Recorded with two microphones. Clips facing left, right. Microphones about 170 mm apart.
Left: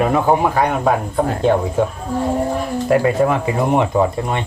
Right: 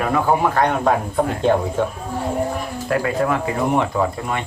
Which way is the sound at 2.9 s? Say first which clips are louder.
Left 5 dB; 25° left (ahead or behind).